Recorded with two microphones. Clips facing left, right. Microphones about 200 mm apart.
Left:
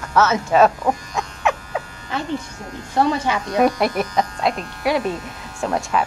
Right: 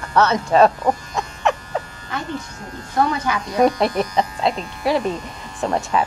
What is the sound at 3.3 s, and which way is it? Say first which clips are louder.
Speech: left 1 dB; 25° left (ahead or behind).